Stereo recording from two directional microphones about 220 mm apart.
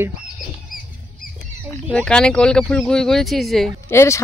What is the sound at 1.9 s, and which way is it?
Speech, 5° left (ahead or behind).